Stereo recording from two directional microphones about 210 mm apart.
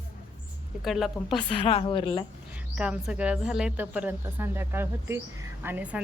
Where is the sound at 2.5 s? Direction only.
5° right (ahead or behind).